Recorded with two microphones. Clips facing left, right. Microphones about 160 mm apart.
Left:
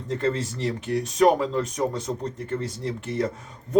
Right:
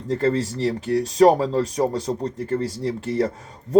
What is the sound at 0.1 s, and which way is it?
Speech, 35° right (ahead or behind).